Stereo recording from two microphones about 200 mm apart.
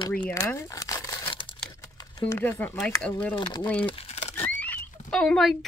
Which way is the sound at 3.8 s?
30° left (ahead or behind).